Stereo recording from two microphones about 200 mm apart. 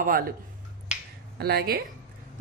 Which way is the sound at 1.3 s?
50° right (ahead or behind).